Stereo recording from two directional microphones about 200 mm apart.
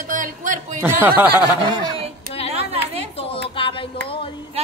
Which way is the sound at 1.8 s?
30° right (ahead or behind).